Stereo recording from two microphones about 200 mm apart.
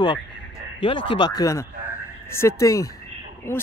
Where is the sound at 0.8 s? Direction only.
25° left (ahead or behind).